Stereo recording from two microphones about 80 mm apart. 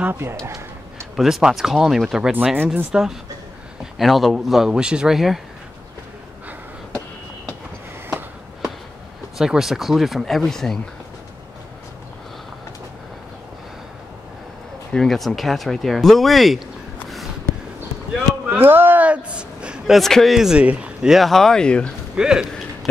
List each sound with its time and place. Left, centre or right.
0.2 s speech: right
1.1 s speech: centre
2.5 s speech: right
2.9 s speech: centre
9.4 s speech: centre
14.9 s speech: centre
18.5 s a sound: right
19.9 s speech: centre
22.1 s speech: centre